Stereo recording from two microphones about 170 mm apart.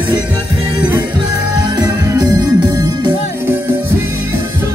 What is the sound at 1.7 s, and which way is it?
Music, 20° right (ahead or behind).